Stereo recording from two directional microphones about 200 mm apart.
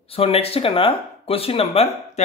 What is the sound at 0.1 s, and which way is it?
Speech, 30° left (ahead or behind).